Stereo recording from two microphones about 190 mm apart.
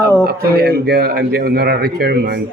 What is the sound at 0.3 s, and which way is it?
Speech, 55° right (ahead or behind).